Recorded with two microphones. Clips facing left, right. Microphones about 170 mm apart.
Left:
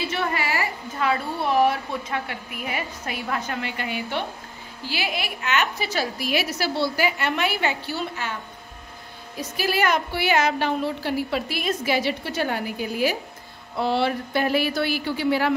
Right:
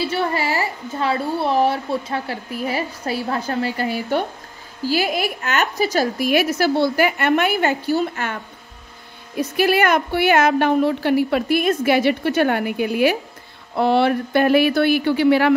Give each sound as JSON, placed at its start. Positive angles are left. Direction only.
{"t": 0.1, "sound": "a woman's voice", "side_deg": -30}
{"t": 9.4, "sound": "a woman's voice", "side_deg": -60}